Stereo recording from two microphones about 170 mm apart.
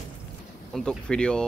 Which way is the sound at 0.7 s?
5° left (ahead or behind).